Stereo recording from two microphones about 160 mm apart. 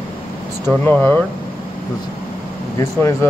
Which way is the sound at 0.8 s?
10° left (ahead or behind).